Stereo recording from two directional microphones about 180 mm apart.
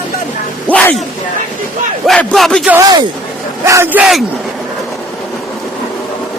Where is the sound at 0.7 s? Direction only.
10° left (ahead or behind).